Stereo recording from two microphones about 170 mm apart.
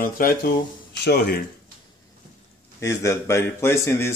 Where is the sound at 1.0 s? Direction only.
80° left.